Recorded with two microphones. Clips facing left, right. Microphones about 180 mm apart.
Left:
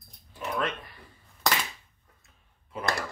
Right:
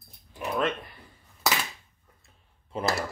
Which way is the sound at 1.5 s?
5° right (ahead or behind).